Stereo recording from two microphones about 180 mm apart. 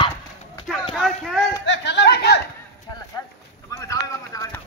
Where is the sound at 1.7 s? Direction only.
70° left (ahead or behind).